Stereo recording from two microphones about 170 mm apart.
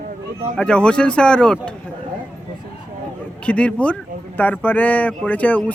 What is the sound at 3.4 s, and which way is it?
Speech, 5° left (ahead or behind).